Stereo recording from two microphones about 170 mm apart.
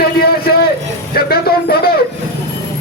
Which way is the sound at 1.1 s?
65° left (ahead or behind).